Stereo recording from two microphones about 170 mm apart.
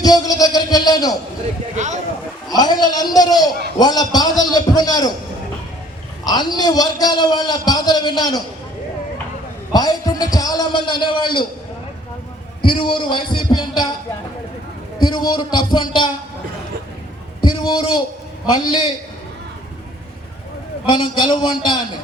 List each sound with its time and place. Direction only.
0.0 s speech: 20° left (ahead or behind)
1.7 s speech: 45° right (ahead or behind)
2.5 s a man's voice: 25° left (ahead or behind)
6.2 s a man's voice: 25° left (ahead or behind)
9.7 s a man's voice: 25° left (ahead or behind)
12.6 s a man's voice: 30° left (ahead or behind)
14.9 s a man's voice: 25° left (ahead or behind)
17.4 s a man's voice: 25° left (ahead or behind)
20.9 s a man's voice: 25° left (ahead or behind)